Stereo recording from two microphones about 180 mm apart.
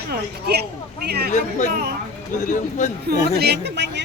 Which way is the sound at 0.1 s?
65° right (ahead or behind).